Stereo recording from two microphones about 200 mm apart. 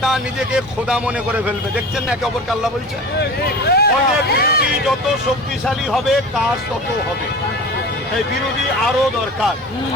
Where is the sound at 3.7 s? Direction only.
55° left (ahead or behind).